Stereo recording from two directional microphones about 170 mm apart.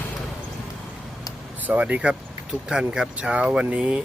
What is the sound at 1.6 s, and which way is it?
Speech, 10° right (ahead or behind).